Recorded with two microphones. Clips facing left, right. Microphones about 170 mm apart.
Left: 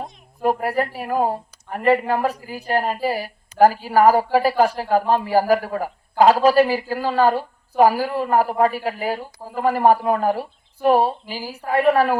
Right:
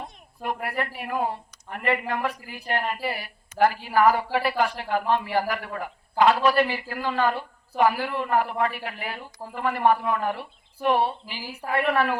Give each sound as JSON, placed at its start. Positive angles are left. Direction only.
{"t": 0.0, "sound": "a woman's voice", "side_deg": 35}